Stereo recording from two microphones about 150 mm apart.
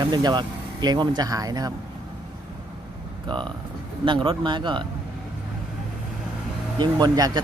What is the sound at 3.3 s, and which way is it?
A man's voice, 30° right (ahead or behind).